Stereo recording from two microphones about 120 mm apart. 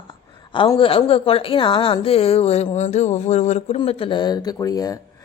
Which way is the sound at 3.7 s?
50° left (ahead or behind).